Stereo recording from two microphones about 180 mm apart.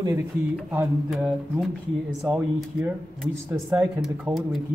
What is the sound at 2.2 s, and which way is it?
Speech, 5° right (ahead or behind).